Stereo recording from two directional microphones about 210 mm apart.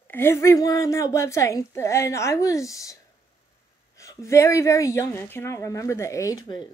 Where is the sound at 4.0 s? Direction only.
15° left (ahead or behind).